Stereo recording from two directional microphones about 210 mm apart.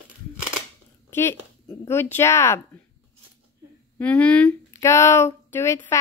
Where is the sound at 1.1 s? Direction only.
10° left (ahead or behind).